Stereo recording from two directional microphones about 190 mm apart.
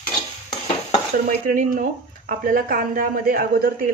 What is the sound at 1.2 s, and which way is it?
A woman's voice, 45° right (ahead or behind).